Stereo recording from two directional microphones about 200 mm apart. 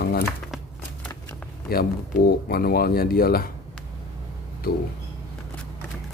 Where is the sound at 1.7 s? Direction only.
50° left (ahead or behind).